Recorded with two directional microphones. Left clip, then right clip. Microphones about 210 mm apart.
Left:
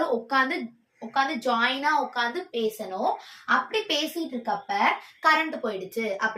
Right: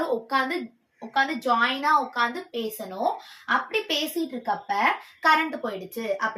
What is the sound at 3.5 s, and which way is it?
A woman's voice, 15° left (ahead or behind).